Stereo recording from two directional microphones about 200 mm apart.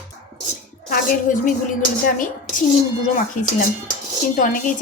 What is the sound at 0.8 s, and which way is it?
Speech, 45° left (ahead or behind).